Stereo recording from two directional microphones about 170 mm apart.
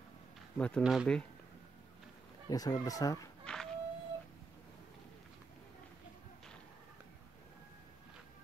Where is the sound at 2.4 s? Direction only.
20° left (ahead or behind).